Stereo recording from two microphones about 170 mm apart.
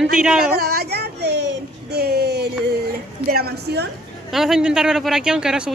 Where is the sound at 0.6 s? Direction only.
70° right (ahead or behind).